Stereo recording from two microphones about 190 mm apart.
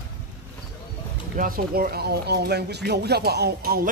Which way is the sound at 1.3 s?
50° right (ahead or behind).